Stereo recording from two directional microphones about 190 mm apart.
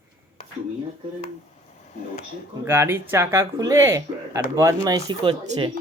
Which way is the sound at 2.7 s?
10° right (ahead or behind).